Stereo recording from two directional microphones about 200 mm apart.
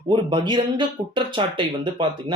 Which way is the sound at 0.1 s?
25° right (ahead or behind).